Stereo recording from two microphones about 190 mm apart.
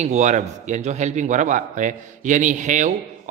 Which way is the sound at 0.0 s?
35° right (ahead or behind).